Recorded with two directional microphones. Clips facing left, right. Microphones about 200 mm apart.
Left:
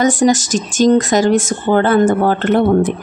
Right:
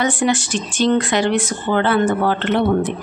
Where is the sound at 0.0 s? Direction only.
40° left (ahead or behind).